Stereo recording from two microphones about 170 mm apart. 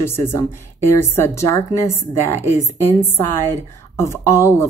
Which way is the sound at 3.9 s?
15° left (ahead or behind).